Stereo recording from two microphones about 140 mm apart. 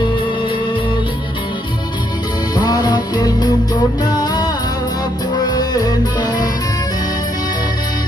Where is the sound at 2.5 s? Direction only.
30° left (ahead or behind).